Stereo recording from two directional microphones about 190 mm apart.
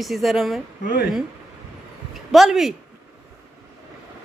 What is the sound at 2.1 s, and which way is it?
Speech, centre (ahead or behind).